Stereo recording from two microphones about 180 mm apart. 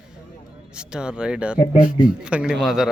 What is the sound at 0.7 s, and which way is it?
Speech, 5° right (ahead or behind).